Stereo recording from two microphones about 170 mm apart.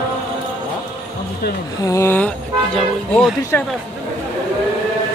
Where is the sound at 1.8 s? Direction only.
20° left (ahead or behind).